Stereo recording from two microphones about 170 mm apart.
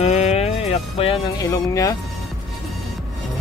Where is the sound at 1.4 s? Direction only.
20° left (ahead or behind).